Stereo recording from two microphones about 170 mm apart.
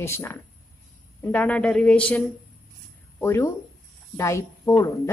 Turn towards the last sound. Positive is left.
turn(degrees=20)  # may be behind; listen again after turning